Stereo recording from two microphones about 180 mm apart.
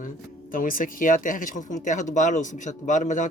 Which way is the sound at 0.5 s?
50° left (ahead or behind).